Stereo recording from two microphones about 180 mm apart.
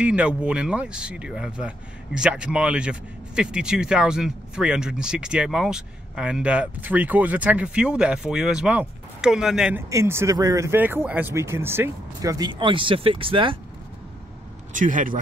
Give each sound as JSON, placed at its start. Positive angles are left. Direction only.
{"t": 0.0, "sound": "speech", "side_deg": -5}
{"t": 9.8, "sound": "speech", "side_deg": -15}
{"t": 14.7, "sound": "speech", "side_deg": -45}